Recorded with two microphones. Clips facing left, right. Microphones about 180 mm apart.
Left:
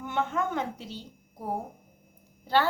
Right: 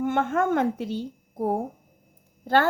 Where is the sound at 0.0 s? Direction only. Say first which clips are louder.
Right 6 dB; 50° right (ahead or behind).